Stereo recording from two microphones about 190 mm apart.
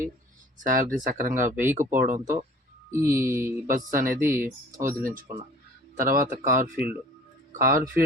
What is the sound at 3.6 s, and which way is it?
Speech, 45° right (ahead or behind).